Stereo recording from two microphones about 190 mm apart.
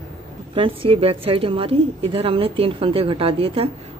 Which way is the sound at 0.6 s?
30° right (ahead or behind).